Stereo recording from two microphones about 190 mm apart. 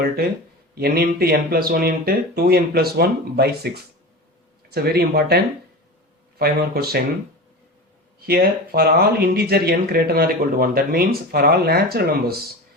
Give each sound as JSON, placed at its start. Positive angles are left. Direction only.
{"t": 0.8, "sound": "speech", "side_deg": -55}
{"t": 4.7, "sound": "speech", "side_deg": -55}
{"t": 6.4, "sound": "speech", "side_deg": -55}
{"t": 8.3, "sound": "speech", "side_deg": -55}